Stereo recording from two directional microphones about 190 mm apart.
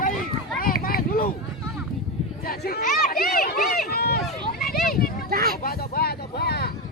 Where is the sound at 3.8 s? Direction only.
55° left (ahead or behind).